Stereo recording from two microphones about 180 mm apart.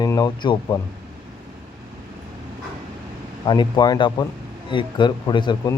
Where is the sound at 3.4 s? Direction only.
25° left (ahead or behind).